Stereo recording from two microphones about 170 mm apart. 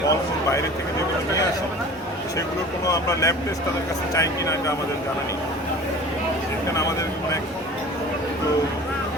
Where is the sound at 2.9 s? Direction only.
20° left (ahead or behind).